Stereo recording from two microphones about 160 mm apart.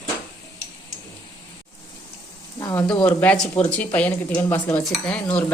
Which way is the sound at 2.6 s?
20° left (ahead or behind).